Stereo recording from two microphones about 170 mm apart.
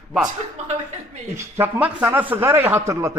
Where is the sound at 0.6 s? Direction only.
40° right (ahead or behind).